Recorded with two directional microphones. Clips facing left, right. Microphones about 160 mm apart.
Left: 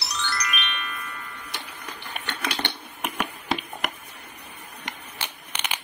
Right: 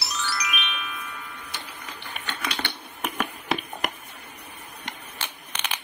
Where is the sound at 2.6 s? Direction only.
10° left (ahead or behind).